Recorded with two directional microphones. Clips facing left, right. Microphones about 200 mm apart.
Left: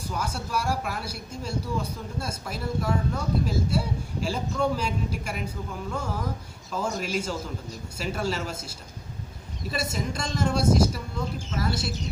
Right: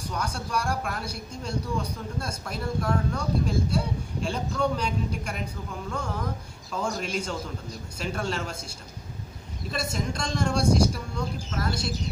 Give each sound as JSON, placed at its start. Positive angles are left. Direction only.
{"t": 0.1, "sound": "speech", "side_deg": 5}
{"t": 9.7, "sound": "speech", "side_deg": 5}